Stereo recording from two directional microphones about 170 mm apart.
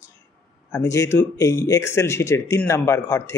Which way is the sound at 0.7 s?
20° left (ahead or behind).